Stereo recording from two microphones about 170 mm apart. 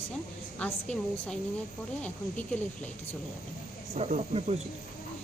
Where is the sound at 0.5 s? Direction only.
10° left (ahead or behind).